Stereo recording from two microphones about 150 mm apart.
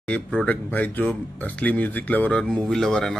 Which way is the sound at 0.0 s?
10° left (ahead or behind).